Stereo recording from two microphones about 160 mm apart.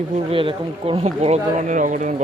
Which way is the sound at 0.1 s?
35° right (ahead or behind).